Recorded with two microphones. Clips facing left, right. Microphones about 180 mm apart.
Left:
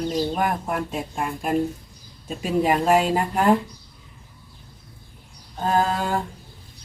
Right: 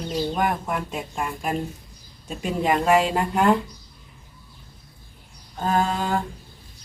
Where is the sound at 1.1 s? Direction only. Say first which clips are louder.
Left 3 dB; centre (ahead or behind).